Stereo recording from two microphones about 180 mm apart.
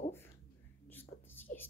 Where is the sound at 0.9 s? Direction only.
10° left (ahead or behind).